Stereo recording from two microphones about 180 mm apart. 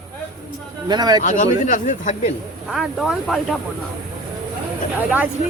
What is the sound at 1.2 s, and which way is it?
Speech, 45° left (ahead or behind).